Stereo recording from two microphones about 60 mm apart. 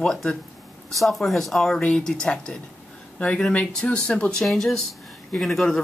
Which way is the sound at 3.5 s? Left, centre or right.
Centre.